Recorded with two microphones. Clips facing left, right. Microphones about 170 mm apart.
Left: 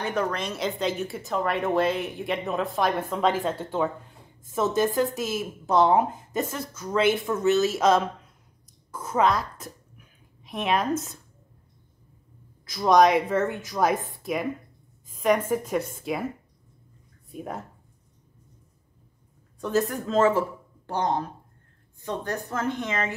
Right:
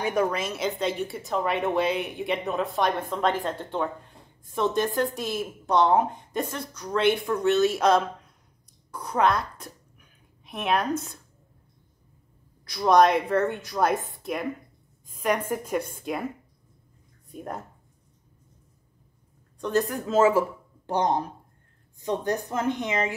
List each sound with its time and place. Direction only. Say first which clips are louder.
0.0 s speech: right 2 dB; 10° right (ahead or behind)
8.9 s a sound: even; centre (ahead or behind)
12.6 s speech: even; centre (ahead or behind)
19.6 s a woman's voice: even; centre (ahead or behind); by 23.1 s 15° right (ahead or behind)